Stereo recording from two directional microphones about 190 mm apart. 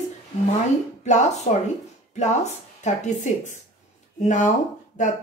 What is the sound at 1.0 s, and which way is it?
Speech, 40° left (ahead or behind).